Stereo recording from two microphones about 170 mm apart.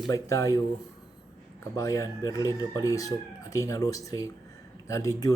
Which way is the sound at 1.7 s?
20° left (ahead or behind).